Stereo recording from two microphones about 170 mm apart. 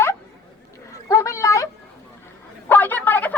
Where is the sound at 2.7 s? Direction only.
10° left (ahead or behind).